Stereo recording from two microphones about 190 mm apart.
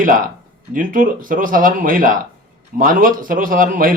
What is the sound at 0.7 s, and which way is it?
A man's voice, 45° right (ahead or behind).